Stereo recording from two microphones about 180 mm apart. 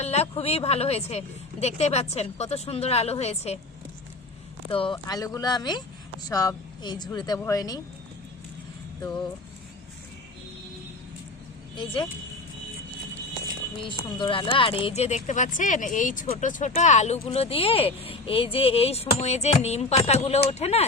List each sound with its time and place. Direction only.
0.0 s speech: 35° left (ahead or behind)
4.7 s speech: 30° left (ahead or behind)
9.0 s music: 20° left (ahead or behind)
13.8 s speech: 30° left (ahead or behind)